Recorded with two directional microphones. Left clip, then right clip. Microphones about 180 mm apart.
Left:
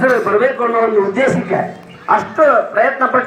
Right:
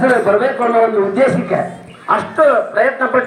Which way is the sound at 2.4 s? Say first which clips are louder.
Even; 45° right (ahead or behind).